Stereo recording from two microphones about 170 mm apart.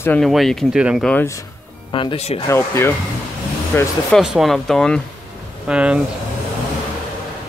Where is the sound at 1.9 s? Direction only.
30° left (ahead or behind).